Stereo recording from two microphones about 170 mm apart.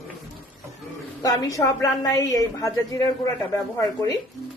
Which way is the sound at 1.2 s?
20° left (ahead or behind).